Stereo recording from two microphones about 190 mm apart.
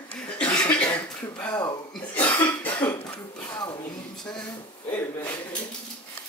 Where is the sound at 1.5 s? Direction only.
20° left (ahead or behind).